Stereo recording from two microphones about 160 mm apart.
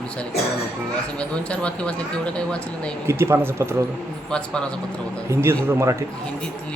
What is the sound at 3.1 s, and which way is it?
Speech, 15° right (ahead or behind).